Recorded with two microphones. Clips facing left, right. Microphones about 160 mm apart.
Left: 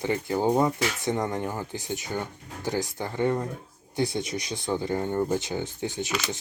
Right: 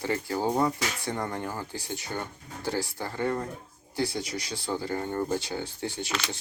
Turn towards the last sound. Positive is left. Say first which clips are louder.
# left 3 dB
turn(degrees=15)  # may be behind; listen again after turning